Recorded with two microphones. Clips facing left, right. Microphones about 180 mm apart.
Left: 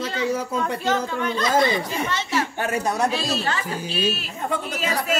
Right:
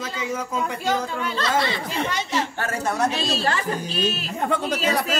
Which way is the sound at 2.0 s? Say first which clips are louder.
Even; 15° right (ahead or behind).